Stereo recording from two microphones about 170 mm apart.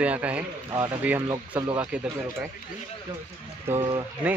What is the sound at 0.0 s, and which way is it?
Speech, 10° right (ahead or behind).